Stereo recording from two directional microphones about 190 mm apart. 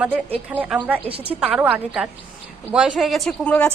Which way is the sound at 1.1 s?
30° right (ahead or behind).